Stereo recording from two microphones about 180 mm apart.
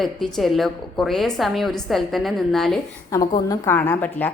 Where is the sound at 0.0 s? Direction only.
Centre (ahead or behind).